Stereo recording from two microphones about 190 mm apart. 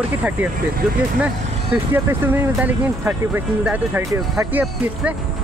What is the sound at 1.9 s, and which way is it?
Speech, 10° right (ahead or behind).